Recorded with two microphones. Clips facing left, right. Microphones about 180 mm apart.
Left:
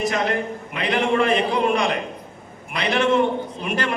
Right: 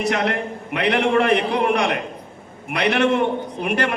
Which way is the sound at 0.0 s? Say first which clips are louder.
Right 1 dB; 70° right (ahead or behind).